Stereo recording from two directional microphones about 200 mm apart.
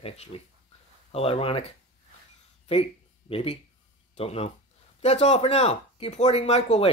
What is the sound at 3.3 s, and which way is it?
Speech, 30° left (ahead or behind).